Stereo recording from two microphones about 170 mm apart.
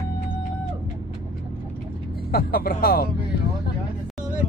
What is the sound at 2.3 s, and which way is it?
Speech, 60° left (ahead or behind).